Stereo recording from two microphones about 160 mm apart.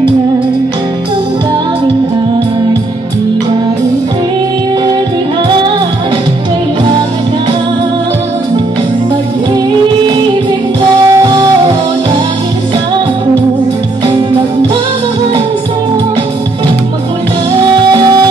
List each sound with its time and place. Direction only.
11.1 s music: 25° right (ahead or behind)
17.9 s music: 25° right (ahead or behind)